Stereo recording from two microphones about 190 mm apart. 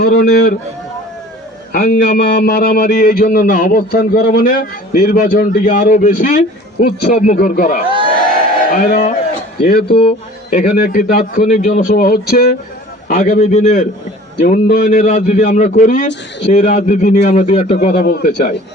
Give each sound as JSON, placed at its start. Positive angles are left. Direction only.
{"t": 0.0, "sound": "a man's voice", "side_deg": 55}
{"t": 1.7, "sound": "a man's voice", "side_deg": 50}
{"t": 18.0, "sound": "a man's voice", "side_deg": 50}